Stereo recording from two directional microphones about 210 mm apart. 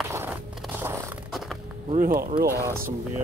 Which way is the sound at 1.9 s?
40° right (ahead or behind).